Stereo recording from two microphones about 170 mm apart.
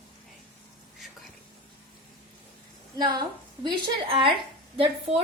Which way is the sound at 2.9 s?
25° right (ahead or behind).